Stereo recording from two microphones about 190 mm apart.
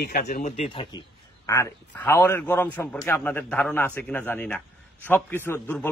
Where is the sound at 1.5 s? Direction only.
15° left (ahead or behind).